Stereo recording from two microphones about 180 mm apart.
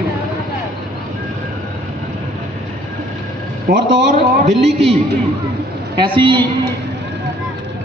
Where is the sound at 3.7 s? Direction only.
55° right (ahead or behind).